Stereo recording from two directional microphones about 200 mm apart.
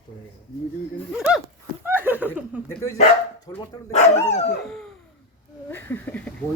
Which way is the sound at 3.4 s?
20° left (ahead or behind).